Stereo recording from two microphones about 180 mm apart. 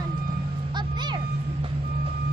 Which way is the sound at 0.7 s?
25° right (ahead or behind).